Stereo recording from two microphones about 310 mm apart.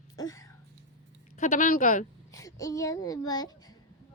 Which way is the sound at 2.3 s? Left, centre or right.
Centre.